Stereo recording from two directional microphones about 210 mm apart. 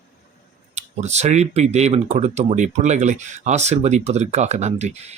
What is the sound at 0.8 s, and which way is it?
Speech, 30° right (ahead or behind).